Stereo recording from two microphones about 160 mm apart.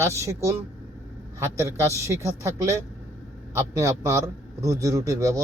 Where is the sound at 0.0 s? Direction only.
20° right (ahead or behind).